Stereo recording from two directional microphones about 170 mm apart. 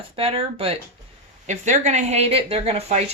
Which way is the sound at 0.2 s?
35° right (ahead or behind).